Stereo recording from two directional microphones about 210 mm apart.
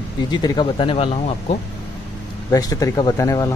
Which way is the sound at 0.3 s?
20° left (ahead or behind).